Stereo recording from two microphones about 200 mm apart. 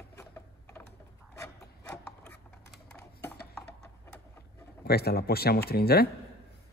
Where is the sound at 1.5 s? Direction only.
5° left (ahead or behind).